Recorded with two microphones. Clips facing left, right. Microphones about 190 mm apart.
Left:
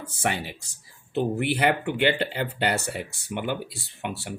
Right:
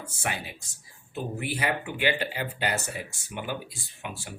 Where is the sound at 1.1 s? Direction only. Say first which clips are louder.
Left 8 dB; 65° left (ahead or behind).